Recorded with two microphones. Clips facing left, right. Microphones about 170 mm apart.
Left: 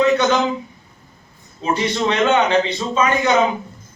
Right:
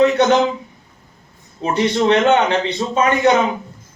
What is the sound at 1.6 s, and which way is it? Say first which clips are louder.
A man's voice: right 4 dB; 60° right (ahead or behind).